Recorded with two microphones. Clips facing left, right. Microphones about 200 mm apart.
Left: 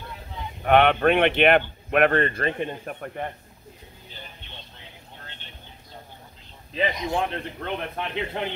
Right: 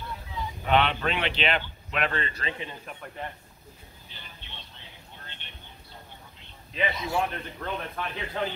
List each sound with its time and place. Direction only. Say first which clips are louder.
0.3 s speech: left 5 dB; 55° left (ahead or behind)
6.9 s a man's voice: left 2 dB; 15° left (ahead or behind)